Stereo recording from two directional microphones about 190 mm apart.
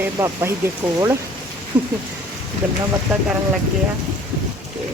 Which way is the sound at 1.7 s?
25° right (ahead or behind).